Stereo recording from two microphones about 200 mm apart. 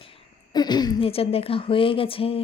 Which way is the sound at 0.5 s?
20° left (ahead or behind).